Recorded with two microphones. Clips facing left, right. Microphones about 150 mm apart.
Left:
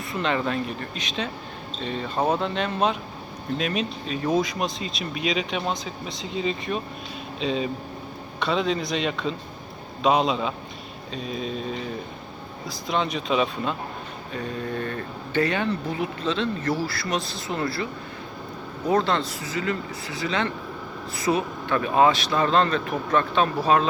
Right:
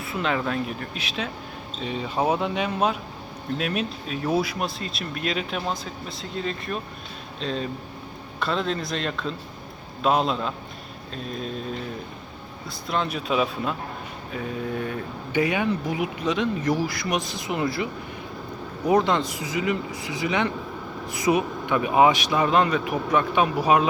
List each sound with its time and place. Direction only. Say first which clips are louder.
0.0 s speech: left 1 dB; 5° right (ahead or behind)
18.9 s speech: right 2 dB; 15° right (ahead or behind)